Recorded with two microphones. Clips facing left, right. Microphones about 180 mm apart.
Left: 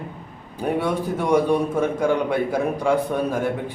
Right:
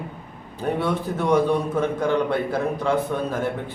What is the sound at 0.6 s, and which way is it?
A man's voice, 10° left (ahead or behind).